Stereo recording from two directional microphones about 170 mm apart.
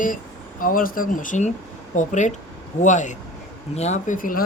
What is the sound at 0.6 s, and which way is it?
Speech, 55° left (ahead or behind).